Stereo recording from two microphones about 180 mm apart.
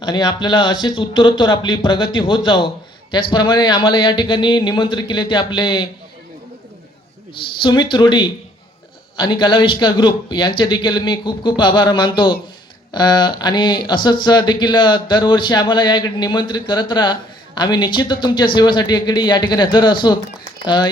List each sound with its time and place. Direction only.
0.0 s speech: 25° left (ahead or behind)
7.6 s speech: 25° left (ahead or behind)